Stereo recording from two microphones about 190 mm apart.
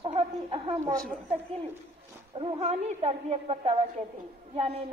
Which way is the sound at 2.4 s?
35° right (ahead or behind).